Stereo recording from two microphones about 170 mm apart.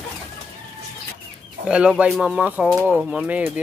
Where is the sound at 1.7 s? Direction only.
5° right (ahead or behind).